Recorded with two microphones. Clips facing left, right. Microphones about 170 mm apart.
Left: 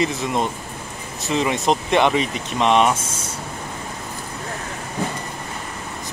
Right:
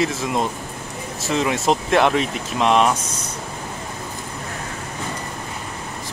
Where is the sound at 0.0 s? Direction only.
Centre (ahead or behind).